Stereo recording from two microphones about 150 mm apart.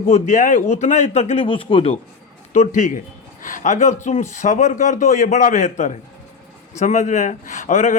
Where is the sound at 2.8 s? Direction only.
55° left (ahead or behind).